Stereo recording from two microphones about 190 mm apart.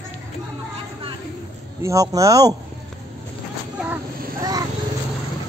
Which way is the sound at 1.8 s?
15° right (ahead or behind).